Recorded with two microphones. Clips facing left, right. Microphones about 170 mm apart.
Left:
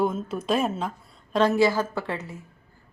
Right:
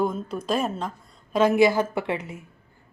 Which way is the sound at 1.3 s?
15° right (ahead or behind).